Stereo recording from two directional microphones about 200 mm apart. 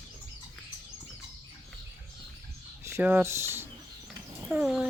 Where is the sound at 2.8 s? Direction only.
10° right (ahead or behind).